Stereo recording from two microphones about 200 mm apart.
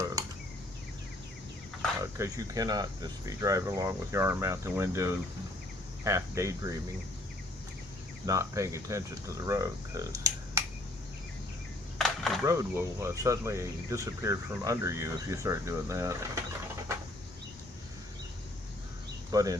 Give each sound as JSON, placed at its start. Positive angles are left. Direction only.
{"t": 2.1, "sound": "speech", "side_deg": -15}
{"t": 8.3, "sound": "speech", "side_deg": -15}
{"t": 11.9, "sound": "a sound", "side_deg": 0}
{"t": 12.5, "sound": "speech", "side_deg": -15}
{"t": 19.3, "sound": "speech", "side_deg": -15}